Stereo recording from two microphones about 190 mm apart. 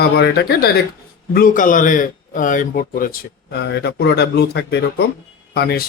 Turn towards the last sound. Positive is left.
turn(degrees=55)  # may be behind; listen again after turning